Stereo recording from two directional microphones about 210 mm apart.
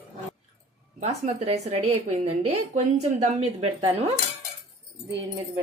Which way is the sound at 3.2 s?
30° right (ahead or behind).